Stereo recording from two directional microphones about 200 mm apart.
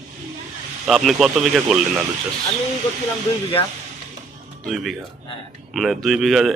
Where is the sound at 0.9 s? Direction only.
Centre (ahead or behind).